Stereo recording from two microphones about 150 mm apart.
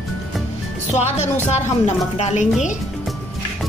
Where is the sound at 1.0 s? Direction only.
50° left (ahead or behind).